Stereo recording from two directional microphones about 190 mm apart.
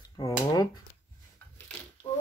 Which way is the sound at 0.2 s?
20° left (ahead or behind).